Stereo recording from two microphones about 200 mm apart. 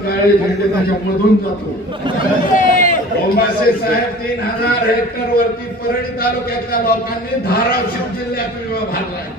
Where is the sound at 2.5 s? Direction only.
40° left (ahead or behind).